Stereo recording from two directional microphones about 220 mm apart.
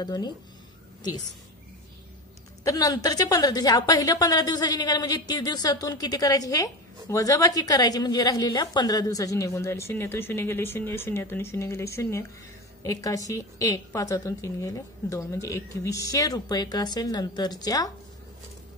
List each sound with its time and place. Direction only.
0.0 s a woman's voice: 20° left (ahead or behind)
2.6 s a woman's voice: 15° left (ahead or behind)